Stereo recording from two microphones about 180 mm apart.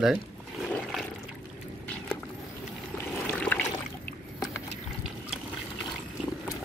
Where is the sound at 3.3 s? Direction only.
10° left (ahead or behind).